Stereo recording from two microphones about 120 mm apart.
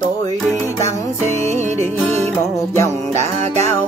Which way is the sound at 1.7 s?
20° left (ahead or behind).